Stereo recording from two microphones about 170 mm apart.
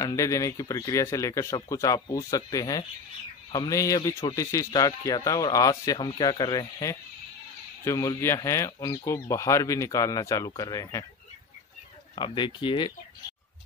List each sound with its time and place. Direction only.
0.0 s a man's voice: 20° left (ahead or behind)
12.2 s a man's voice: 30° left (ahead or behind)